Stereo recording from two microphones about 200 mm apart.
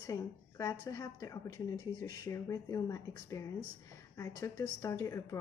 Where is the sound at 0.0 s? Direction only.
15° left (ahead or behind).